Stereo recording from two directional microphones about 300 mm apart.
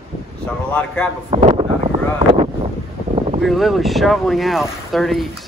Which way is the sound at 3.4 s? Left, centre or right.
Centre.